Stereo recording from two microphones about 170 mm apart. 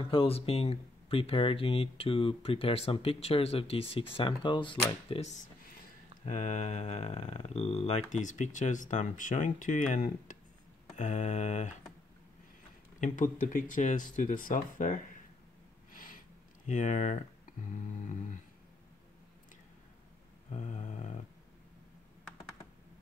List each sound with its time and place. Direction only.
0.1 s speech: 35° left (ahead or behind)
6.2 s speech: 45° left (ahead or behind)
13.0 s speech: 50° left (ahead or behind)
15.9 s a sound: 55° left (ahead or behind)
16.6 s speech: 45° left (ahead or behind)
20.4 s a sound: 40° left (ahead or behind)